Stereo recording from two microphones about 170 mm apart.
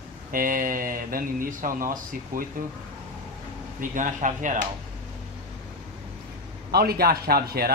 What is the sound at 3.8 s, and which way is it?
Speech, 50° right (ahead or behind).